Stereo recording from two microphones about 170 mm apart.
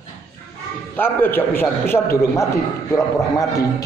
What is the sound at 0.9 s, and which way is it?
A man's voice, 10° left (ahead or behind).